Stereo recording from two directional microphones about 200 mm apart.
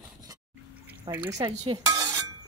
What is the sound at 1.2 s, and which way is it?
Speech, 15° right (ahead or behind).